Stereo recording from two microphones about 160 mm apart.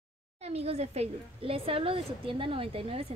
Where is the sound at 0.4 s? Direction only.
40° right (ahead or behind).